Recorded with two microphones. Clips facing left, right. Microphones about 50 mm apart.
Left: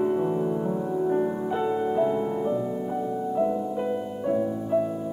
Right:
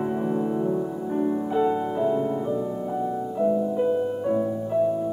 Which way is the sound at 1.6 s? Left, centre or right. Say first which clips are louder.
Even; centre.